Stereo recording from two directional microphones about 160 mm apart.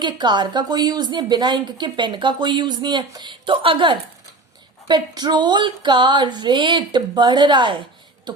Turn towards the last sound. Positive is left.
turn(degrees=-30)  # may be behind; listen again after turning